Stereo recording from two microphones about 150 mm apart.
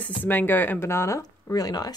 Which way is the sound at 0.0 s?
10° left (ahead or behind).